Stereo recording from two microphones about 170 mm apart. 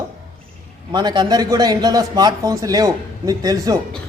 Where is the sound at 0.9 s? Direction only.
25° right (ahead or behind).